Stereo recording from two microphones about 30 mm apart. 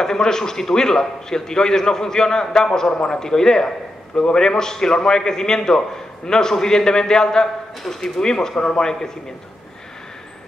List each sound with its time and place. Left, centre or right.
0.0 s a man's voice: centre